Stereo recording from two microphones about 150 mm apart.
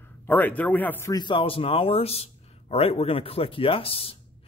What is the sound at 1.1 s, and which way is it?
Speech, 35° left (ahead or behind).